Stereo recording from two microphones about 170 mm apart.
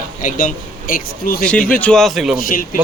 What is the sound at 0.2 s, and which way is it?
Speech, 50° left (ahead or behind).